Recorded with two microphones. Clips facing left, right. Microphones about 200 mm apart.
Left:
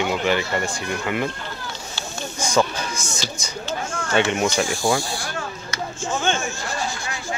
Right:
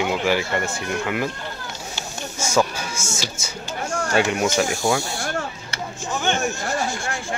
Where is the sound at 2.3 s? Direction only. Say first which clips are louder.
Even; 5° right (ahead or behind).